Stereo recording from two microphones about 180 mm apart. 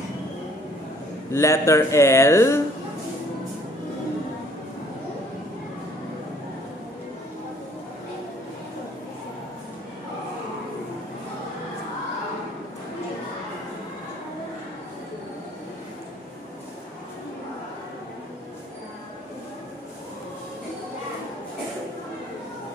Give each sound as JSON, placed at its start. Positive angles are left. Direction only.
{"t": 1.3, "sound": "speech", "side_deg": 15}